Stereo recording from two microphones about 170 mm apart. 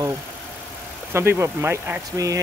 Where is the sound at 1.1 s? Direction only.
15° right (ahead or behind).